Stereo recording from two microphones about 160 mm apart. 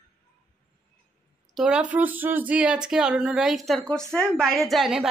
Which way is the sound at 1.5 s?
5° right (ahead or behind).